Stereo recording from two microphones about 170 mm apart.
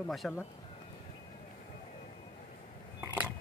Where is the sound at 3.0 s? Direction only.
10° right (ahead or behind).